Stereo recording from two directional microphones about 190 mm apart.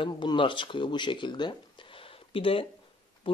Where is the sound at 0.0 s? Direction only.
25° left (ahead or behind).